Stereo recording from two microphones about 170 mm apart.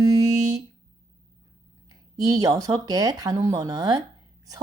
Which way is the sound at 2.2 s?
20° right (ahead or behind).